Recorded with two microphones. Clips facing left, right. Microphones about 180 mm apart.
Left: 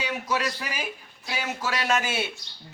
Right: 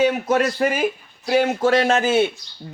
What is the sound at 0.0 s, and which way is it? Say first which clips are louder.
Speech: right 11 dB; 55° right (ahead or behind).